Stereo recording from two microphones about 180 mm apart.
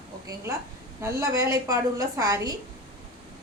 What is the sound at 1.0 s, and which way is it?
A woman's voice, 15° right (ahead or behind).